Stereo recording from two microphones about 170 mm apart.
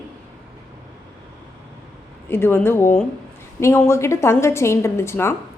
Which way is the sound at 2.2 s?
15° left (ahead or behind).